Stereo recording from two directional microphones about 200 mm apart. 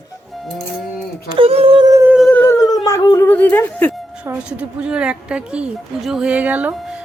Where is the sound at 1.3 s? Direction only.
30° right (ahead or behind).